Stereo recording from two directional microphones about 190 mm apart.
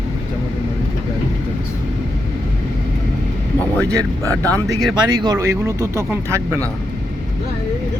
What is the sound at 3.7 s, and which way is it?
Speech, 5° left (ahead or behind).